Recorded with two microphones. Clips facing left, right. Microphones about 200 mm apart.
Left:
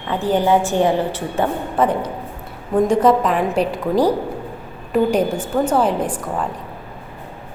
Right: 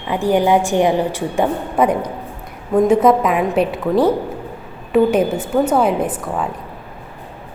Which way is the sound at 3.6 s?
35° left (ahead or behind).